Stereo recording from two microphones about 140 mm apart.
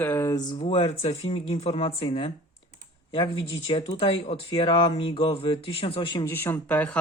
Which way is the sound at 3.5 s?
40° left (ahead or behind).